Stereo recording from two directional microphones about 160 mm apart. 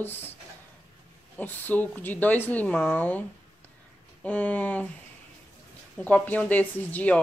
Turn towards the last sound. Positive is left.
turn(degrees=10)  # may be behind; listen again after turning